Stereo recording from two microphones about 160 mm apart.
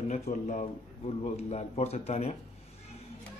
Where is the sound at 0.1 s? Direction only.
50° left (ahead or behind).